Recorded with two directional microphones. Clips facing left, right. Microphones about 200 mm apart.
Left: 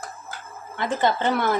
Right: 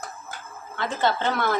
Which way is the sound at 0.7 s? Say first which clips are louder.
Left 2 dB; 15° left (ahead or behind).